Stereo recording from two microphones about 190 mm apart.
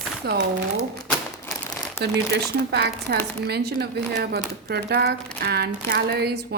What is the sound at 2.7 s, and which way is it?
Speech, 65° right (ahead or behind).